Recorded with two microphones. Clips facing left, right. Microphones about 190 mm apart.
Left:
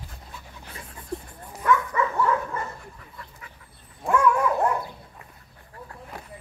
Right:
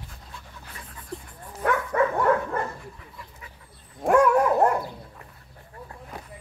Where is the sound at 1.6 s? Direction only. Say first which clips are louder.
Even; 60° right (ahead or behind).